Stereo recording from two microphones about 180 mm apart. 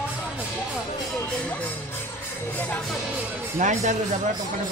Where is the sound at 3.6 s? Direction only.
40° right (ahead or behind).